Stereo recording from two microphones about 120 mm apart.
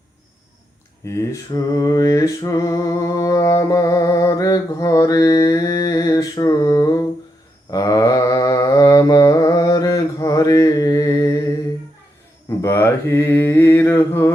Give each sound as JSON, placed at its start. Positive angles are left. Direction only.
{"t": 1.0, "sound": "mantra", "side_deg": 25}
{"t": 12.6, "sound": "mantra", "side_deg": 20}